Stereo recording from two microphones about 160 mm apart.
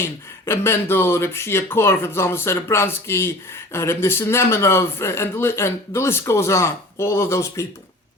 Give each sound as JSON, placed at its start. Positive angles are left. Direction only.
{"t": 0.0, "sound": "speech", "side_deg": 15}